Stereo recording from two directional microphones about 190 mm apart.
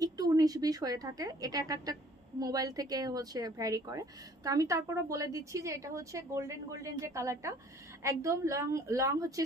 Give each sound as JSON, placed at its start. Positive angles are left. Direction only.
{"t": 0.0, "sound": "a woman's voice", "side_deg": -20}